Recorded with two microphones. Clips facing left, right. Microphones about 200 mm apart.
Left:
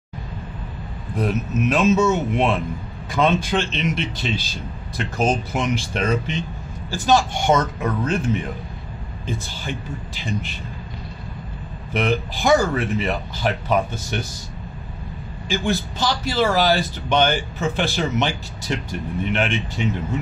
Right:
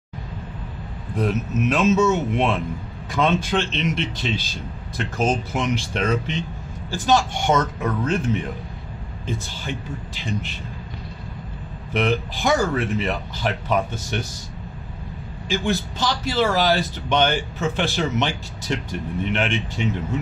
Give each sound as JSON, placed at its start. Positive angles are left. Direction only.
{"t": 1.1, "sound": "a man's voice", "side_deg": 10}
{"t": 9.2, "sound": "a man's voice", "side_deg": 10}
{"t": 11.9, "sound": "a man's voice", "side_deg": 10}
{"t": 15.4, "sound": "a man's voice", "side_deg": 10}